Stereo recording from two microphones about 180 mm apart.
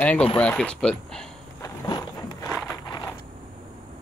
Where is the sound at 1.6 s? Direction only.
20° left (ahead or behind).